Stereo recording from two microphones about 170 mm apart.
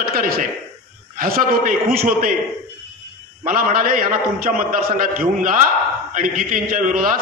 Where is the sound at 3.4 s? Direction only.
55° right (ahead or behind).